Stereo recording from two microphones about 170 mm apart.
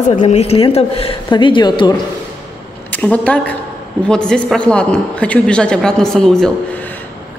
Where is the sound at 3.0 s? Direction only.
10° left (ahead or behind).